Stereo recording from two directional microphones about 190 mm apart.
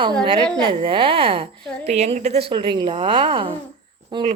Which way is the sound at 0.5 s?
25° right (ahead or behind).